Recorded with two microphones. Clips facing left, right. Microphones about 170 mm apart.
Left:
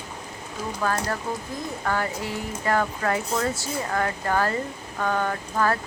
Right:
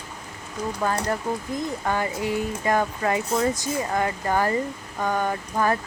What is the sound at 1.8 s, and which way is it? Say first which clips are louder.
Speech: right 1 dB; 15° right (ahead or behind).